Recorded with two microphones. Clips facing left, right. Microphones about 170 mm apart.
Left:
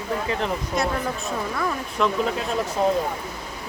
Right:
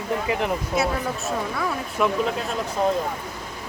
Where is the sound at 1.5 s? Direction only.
Centre (ahead or behind).